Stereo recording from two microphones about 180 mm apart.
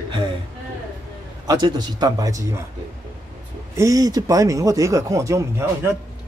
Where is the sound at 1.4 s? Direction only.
20° right (ahead or behind).